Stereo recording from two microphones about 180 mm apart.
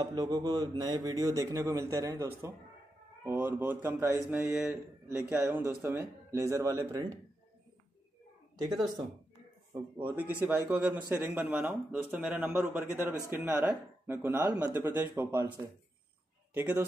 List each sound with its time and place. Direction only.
0.0 s a man's voice: 20° right (ahead or behind)
9.9 s a man's voice: 10° right (ahead or behind)